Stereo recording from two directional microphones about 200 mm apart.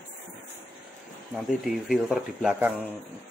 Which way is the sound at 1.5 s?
5° right (ahead or behind).